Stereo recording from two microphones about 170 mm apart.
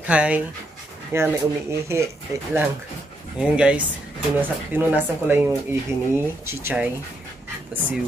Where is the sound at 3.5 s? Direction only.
5° right (ahead or behind).